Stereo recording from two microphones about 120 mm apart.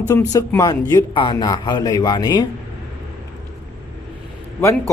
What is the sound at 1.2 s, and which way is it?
Speech, 40° left (ahead or behind).